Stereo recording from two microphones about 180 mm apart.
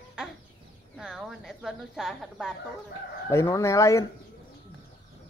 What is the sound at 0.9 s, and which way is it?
Chicken, centre (ahead or behind).